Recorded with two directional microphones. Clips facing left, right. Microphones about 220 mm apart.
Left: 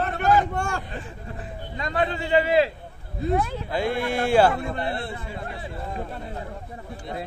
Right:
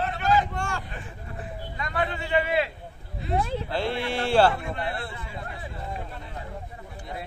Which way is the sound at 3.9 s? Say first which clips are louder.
Left 5 dB; 50° left (ahead or behind).